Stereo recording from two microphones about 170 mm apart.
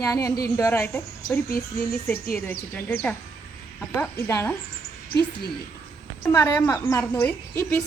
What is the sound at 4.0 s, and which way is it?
Speech, 15° left (ahead or behind).